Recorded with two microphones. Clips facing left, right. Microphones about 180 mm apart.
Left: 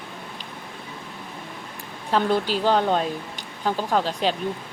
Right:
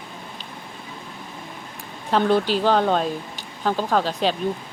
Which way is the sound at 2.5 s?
15° left (ahead or behind).